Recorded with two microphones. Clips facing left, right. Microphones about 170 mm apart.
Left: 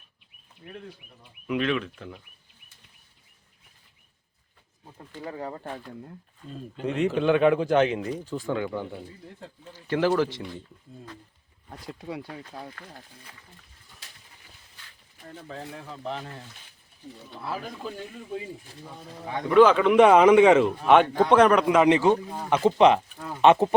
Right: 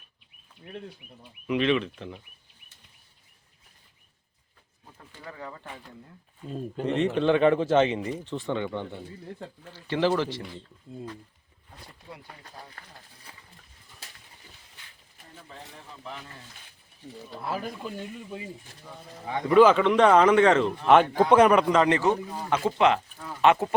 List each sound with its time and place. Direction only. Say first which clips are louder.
1.5 s speech: right 2 dB; centre (ahead or behind)
4.9 s speech: left 6 dB; 35° left (ahead or behind)
6.8 s speech: even; 5° left (ahead or behind)
11.7 s speech: left 10 dB; 90° left
19.5 s speech: left 1 dB; centre (ahead or behind)
20.8 s a man's voice: right 3 dB; centre (ahead or behind)
21.7 s speech: left 3 dB; 15° left (ahead or behind)